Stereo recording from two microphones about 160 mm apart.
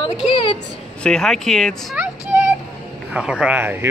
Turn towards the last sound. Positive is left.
turn(degrees=-10)  # may be behind; listen again after turning